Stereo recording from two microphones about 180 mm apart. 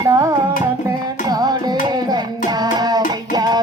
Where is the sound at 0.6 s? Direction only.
20° right (ahead or behind).